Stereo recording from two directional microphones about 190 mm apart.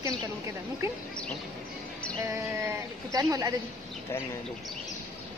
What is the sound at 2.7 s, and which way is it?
Speech, 15° right (ahead or behind).